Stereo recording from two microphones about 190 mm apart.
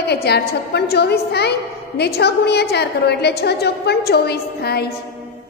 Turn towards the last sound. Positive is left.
turn(degrees=55)  # may be behind; listen again after turning